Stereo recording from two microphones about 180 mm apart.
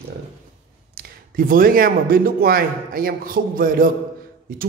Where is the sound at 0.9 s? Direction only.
50° right (ahead or behind).